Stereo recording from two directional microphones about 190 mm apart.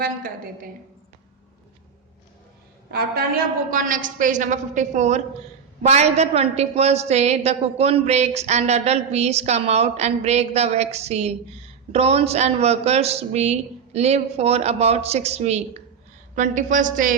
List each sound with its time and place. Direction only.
0.0 s a woman's voice: 50° right (ahead or behind)
2.9 s a woman's voice: 55° right (ahead or behind)